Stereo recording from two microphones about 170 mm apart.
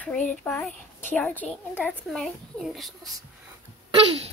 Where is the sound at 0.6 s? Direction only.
10° left (ahead or behind).